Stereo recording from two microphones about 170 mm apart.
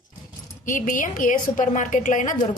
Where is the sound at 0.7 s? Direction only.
50° left (ahead or behind).